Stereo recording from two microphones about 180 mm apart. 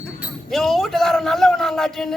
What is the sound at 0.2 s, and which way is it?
A man's voice, centre (ahead or behind).